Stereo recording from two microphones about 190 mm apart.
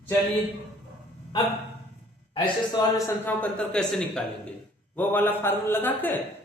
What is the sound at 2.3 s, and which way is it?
A man's voice, 20° left (ahead or behind).